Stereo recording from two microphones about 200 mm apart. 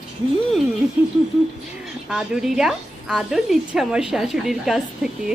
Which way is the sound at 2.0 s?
5° right (ahead or behind).